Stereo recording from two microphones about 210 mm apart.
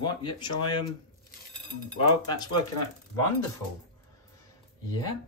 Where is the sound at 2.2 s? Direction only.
20° left (ahead or behind).